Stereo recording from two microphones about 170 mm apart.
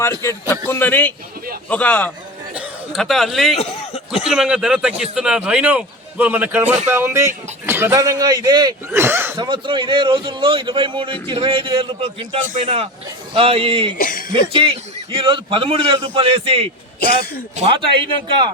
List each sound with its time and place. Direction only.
0.2 s a man's voice: 15° left (ahead or behind); by 3.6 s centre (ahead or behind)
3.6 s chuckle: 35° left (ahead or behind)
4.2 s a man's voice: 5° right (ahead or behind); by 8.7 s 25° right (ahead or behind)
9.0 s a man's voice: 15° right (ahead or behind)
9.4 s a man's voice: 30° right (ahead or behind)
14.0 s speech: 55° left (ahead or behind)
14.5 s a man's voice: 30° right (ahead or behind)